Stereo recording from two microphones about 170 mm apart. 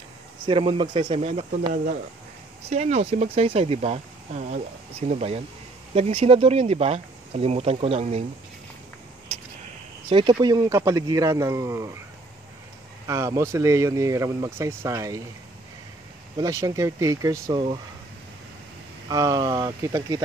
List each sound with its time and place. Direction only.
0.5 s speech: 30° right (ahead or behind)
10.0 s a man's voice: 30° right (ahead or behind)
13.0 s speech: 15° right (ahead or behind)
16.3 s a man's voice: 20° right (ahead or behind)
19.0 s a man's voice: 20° right (ahead or behind)